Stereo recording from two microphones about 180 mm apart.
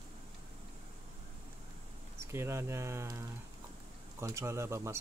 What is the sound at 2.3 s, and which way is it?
Speech, 15° right (ahead or behind).